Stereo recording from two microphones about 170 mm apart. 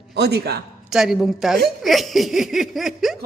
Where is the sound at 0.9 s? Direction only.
Centre (ahead or behind).